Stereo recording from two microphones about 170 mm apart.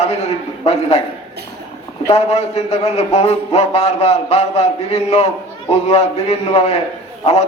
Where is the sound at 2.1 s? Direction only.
40° left (ahead or behind).